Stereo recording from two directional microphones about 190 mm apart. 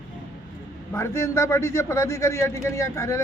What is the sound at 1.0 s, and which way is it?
A man's voice, 15° left (ahead or behind).